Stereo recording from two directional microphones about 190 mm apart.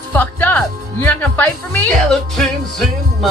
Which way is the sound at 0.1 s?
10° left (ahead or behind).